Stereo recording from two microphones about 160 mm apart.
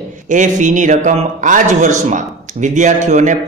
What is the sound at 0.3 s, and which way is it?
A man's voice, 50° right (ahead or behind).